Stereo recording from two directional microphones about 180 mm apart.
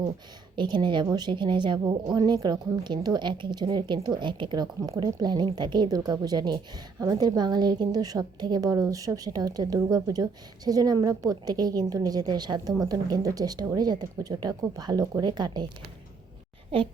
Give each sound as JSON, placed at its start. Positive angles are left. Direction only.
{"t": 0.5, "sound": "a woman's voice", "side_deg": -25}